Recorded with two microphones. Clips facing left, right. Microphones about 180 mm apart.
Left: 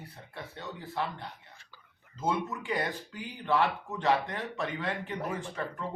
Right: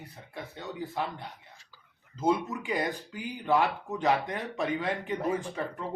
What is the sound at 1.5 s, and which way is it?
Whispering, 60° left (ahead or behind).